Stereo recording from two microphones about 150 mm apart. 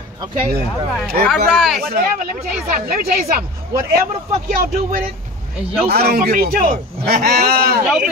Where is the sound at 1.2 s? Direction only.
5° left (ahead or behind).